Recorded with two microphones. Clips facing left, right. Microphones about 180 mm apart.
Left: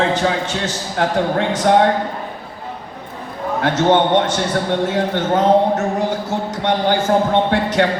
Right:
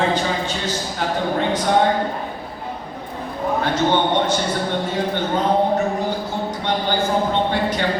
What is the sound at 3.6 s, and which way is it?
A man's voice, 80° left.